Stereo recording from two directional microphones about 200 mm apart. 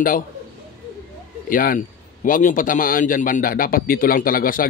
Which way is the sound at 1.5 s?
45° left (ahead or behind).